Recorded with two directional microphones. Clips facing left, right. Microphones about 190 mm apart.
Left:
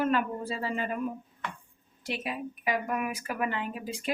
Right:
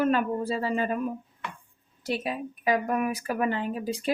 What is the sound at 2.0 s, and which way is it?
Speech, 40° right (ahead or behind).